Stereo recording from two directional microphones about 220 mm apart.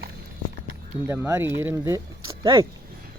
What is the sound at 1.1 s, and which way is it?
Speech, 15° right (ahead or behind).